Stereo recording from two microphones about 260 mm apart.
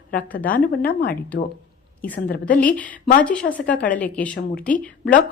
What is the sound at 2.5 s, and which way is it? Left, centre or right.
Speech, centre.